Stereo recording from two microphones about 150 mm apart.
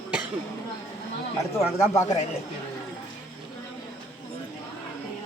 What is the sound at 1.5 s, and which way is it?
Speech, 20° left (ahead or behind).